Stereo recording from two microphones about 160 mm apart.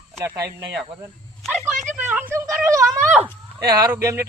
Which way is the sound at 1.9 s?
10° right (ahead or behind).